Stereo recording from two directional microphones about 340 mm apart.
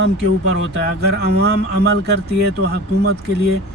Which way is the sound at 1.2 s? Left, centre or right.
Right.